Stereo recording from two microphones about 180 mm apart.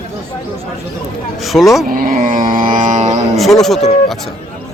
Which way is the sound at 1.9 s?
50° right (ahead or behind).